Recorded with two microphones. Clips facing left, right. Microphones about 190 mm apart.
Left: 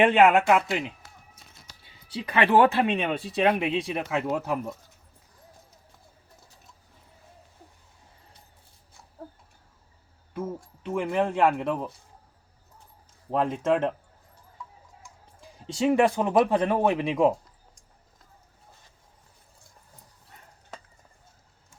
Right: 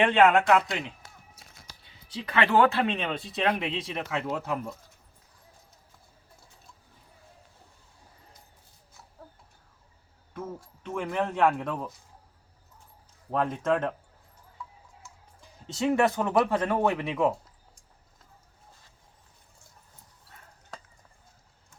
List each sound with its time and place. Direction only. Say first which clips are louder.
0.0 s speech: left 2 dB; 15° left (ahead or behind)
2.1 s speech: left 3 dB; 15° left (ahead or behind)
10.3 s speech: left 5 dB; 10° left (ahead or behind)
13.3 s speech: left 2 dB; 15° left (ahead or behind)
15.4 s speech: left 3 dB; 10° left (ahead or behind)